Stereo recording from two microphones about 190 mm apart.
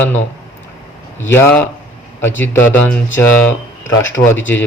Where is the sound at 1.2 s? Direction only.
10° left (ahead or behind).